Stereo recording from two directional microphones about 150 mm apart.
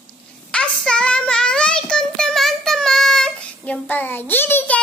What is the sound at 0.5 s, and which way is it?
Child singing, 5° left (ahead or behind).